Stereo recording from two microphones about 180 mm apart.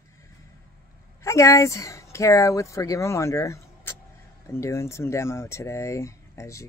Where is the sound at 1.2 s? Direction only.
15° left (ahead or behind).